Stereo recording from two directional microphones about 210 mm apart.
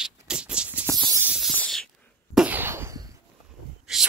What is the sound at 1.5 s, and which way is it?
Spray, 5° left (ahead or behind).